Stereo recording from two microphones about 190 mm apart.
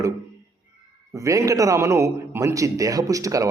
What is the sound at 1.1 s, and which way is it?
A man's voice, 15° right (ahead or behind).